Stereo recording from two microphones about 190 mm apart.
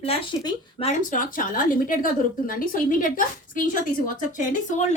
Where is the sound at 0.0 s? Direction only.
30° left (ahead or behind).